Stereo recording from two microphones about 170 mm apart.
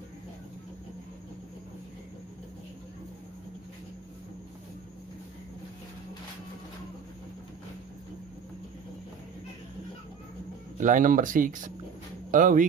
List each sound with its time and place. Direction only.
10.8 s speech: 50° right (ahead or behind)